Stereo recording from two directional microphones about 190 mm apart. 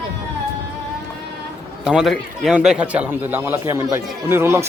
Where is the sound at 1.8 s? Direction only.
Centre (ahead or behind).